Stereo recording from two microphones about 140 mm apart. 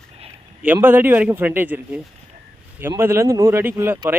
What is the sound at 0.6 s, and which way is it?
Speech, 10° right (ahead or behind).